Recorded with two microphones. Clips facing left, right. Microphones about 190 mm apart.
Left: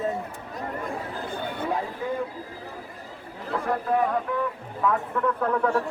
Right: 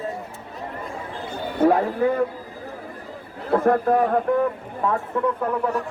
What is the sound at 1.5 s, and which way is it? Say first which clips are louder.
Speech: right 14 dB; 55° right (ahead or behind).